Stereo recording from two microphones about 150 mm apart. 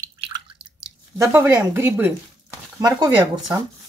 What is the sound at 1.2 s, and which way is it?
Speech, 15° right (ahead or behind).